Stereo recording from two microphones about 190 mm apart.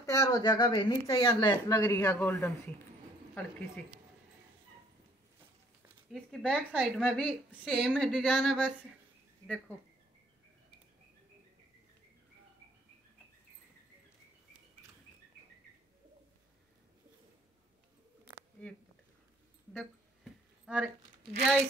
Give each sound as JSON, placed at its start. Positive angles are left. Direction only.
{"t": 0.0, "sound": "speech", "side_deg": 15}
{"t": 6.1, "sound": "a woman's voice", "side_deg": 5}
{"t": 19.7, "sound": "a sound", "side_deg": 5}
{"t": 20.6, "sound": "speech", "side_deg": -5}